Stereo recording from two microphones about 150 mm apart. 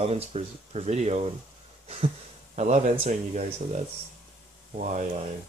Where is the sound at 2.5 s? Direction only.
50° right (ahead or behind).